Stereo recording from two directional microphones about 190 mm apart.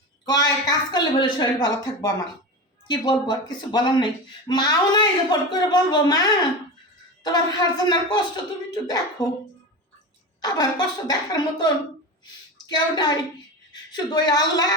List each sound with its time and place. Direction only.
0.3 s speech: 20° left (ahead or behind)
7.3 s speech: 20° left (ahead or behind)
10.4 s speech: 20° left (ahead or behind)